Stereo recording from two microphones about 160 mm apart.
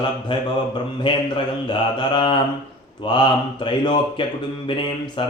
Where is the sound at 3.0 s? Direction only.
30° left (ahead or behind).